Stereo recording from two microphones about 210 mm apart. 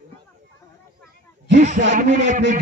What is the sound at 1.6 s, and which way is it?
Speech, 40° right (ahead or behind).